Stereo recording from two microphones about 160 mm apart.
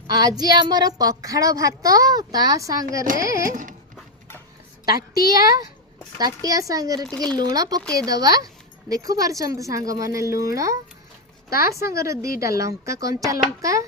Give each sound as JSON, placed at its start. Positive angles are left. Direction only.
{"t": 0.1, "sound": "a woman's voice", "side_deg": -25}
{"t": 3.5, "sound": "dog", "side_deg": -55}
{"t": 4.9, "sound": "a woman's voice", "side_deg": 65}
{"t": 6.1, "sound": "a woman's voice", "side_deg": -25}
{"t": 7.1, "sound": "speech", "side_deg": 5}
{"t": 7.5, "sound": "a woman's voice", "side_deg": -25}
{"t": 11.9, "sound": "a woman's voice", "side_deg": -20}